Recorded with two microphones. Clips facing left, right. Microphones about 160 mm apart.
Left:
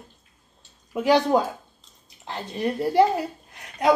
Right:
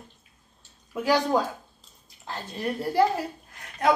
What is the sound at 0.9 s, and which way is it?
A woman's voice, 20° left (ahead or behind).